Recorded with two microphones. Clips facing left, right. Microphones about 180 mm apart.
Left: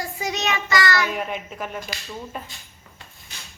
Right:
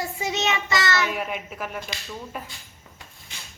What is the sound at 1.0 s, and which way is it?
Speech, 5° right (ahead or behind).